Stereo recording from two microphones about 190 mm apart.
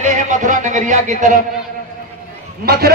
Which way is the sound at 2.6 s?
55° right (ahead or behind).